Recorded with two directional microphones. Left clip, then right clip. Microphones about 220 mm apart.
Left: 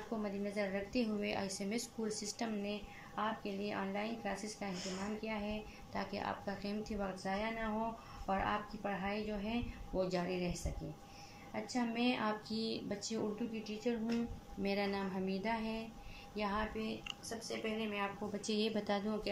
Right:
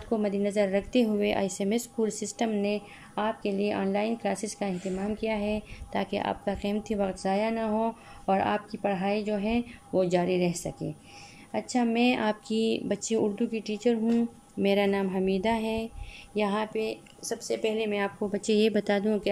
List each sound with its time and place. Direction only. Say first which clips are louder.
0.2 s a woman's voice: right 12 dB; 45° right (ahead or behind)
14.6 s a sound: right 13 dB; 40° right (ahead or behind)
16.3 s a woman's voice: right 11 dB; 45° right (ahead or behind)